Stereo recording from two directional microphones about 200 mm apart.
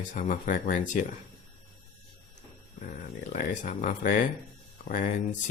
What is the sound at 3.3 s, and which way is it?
Speech, 40° left (ahead or behind).